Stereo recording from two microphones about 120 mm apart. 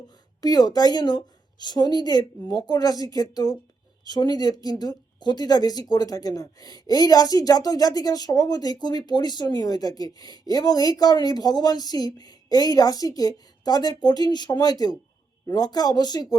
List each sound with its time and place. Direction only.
0.4 s speech: 35° left (ahead or behind)